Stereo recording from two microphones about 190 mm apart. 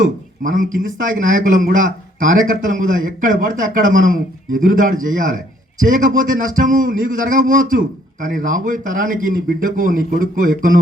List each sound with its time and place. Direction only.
0.0 s a man's voice: 45° right (ahead or behind)